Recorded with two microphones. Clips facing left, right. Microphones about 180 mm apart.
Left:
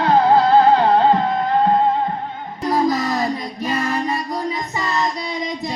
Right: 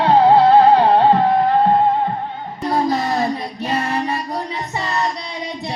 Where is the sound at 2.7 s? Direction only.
30° right (ahead or behind).